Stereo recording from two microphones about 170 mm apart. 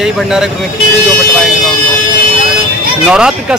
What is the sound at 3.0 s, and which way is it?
Speech, 5° right (ahead or behind).